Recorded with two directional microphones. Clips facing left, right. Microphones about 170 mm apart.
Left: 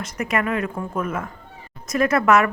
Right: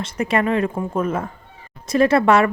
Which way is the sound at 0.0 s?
30° right (ahead or behind).